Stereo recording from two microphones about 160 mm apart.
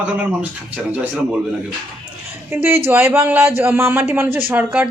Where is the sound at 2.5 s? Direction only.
15° right (ahead or behind).